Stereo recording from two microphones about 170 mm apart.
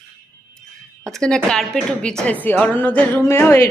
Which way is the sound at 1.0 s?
5° left (ahead or behind).